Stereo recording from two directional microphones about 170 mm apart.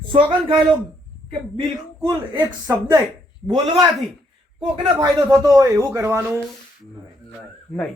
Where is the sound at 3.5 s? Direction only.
25° right (ahead or behind).